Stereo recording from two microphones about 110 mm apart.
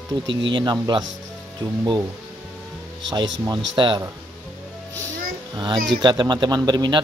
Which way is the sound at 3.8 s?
45° right (ahead or behind).